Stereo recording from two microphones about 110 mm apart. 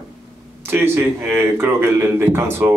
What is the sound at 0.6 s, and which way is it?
Speech, 20° right (ahead or behind).